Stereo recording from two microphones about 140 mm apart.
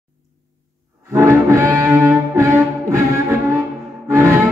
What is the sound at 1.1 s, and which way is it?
Music, 20° right (ahead or behind).